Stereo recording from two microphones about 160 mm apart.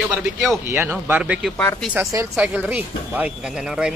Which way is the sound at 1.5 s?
10° left (ahead or behind).